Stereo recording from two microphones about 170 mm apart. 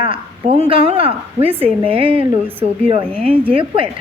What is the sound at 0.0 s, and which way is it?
A woman's voice, 35° right (ahead or behind).